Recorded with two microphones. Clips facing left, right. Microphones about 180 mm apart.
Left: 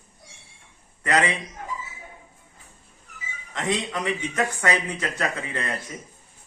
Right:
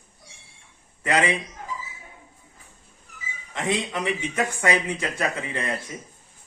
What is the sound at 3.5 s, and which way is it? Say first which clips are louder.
Speech: right 1 dB; 10° right (ahead or behind).